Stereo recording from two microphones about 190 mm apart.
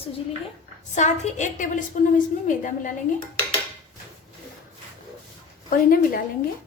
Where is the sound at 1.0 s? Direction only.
40° left (ahead or behind).